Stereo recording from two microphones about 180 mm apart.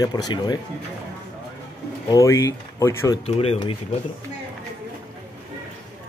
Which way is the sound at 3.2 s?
35° left (ahead or behind).